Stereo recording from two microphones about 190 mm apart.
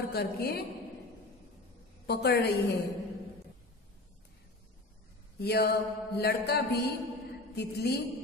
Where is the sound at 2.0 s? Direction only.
55° left (ahead or behind).